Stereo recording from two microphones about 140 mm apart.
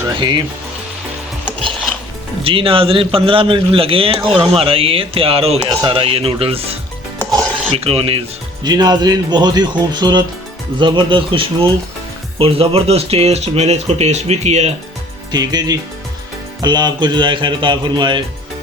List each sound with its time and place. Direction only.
0.2 s a man's voice: 35° right (ahead or behind)
2.4 s a man's voice: 40° right (ahead or behind)
7.8 s a man's voice: 40° right (ahead or behind)
8.6 s a man's voice: 30° right (ahead or behind); by 14.7 s 50° right (ahead or behind)
15.3 s a man's voice: 30° right (ahead or behind)